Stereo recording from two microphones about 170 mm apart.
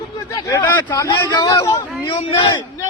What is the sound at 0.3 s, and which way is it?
A man's voice, 20° left (ahead or behind).